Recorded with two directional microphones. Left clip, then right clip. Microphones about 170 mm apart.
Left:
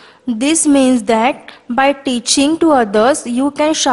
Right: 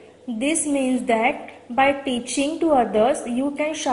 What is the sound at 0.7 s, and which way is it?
Speech, 60° left (ahead or behind).